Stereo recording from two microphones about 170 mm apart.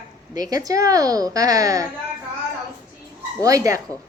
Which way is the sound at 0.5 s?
20° right (ahead or behind).